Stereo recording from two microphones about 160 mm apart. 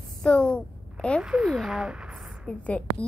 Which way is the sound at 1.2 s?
5° right (ahead or behind).